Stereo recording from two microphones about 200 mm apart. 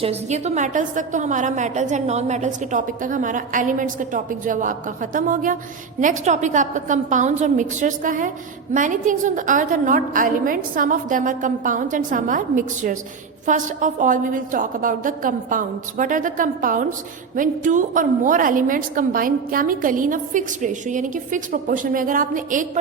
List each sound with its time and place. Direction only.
0.0 s a woman's voice: 35° right (ahead or behind)